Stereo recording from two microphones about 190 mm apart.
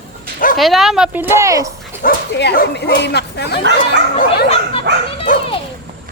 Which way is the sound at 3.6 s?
65° right (ahead or behind).